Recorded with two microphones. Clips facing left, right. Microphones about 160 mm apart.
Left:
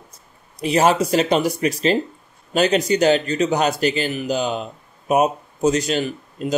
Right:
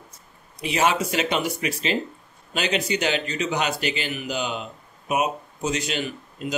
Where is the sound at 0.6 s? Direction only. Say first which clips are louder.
Left 6 dB; 40° left (ahead or behind).